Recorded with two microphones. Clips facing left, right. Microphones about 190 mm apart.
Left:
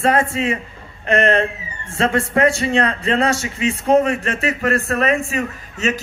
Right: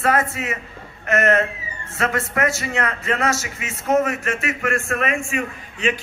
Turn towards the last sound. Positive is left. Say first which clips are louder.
# left 1 dB
turn(degrees=40)  # may be behind; listen again after turning